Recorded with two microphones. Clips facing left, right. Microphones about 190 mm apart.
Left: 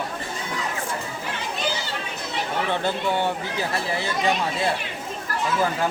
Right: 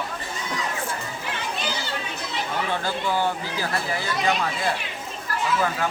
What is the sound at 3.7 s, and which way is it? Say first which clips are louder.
Speech: even; 25° left (ahead or behind).